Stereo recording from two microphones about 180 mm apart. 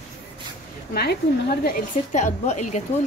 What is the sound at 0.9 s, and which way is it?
Speech, 60° left (ahead or behind).